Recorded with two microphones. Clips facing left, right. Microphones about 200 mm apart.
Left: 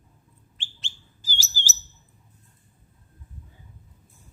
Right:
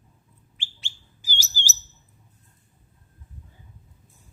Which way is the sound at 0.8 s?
15° right (ahead or behind).